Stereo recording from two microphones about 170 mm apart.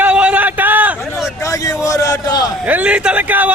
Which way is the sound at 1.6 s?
20° left (ahead or behind).